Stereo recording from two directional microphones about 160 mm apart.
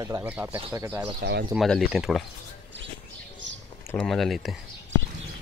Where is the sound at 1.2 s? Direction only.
75° right (ahead or behind).